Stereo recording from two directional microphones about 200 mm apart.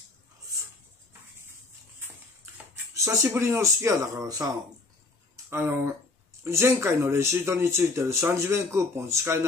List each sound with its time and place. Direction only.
2.5 s speech: 15° right (ahead or behind)
5.3 s a sound: 10° right (ahead or behind)
6.4 s speech: 15° right (ahead or behind)